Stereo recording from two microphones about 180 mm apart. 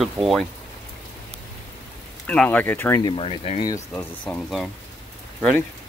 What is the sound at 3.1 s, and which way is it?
Speech, 30° left (ahead or behind).